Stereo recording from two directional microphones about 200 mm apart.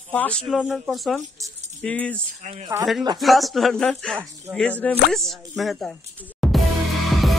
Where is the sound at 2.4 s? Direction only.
30° right (ahead or behind).